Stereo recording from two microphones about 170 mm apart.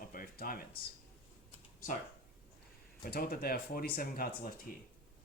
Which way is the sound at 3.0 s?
60° left (ahead or behind).